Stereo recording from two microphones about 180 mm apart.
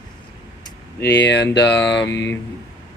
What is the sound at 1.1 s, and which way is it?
Speech, 75° left (ahead or behind).